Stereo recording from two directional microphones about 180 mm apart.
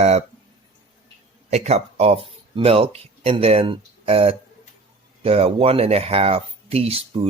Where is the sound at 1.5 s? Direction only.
40° right (ahead or behind).